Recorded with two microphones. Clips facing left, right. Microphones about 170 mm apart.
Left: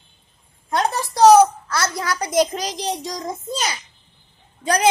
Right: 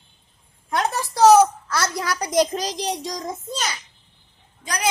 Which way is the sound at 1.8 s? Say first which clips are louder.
Left 2 dB; 25° left (ahead or behind).